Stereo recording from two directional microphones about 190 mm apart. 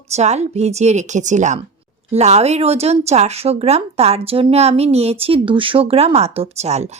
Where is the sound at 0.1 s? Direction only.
35° right (ahead or behind).